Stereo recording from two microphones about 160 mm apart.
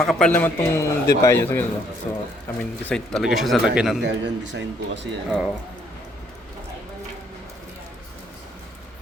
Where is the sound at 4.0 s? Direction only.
90° right.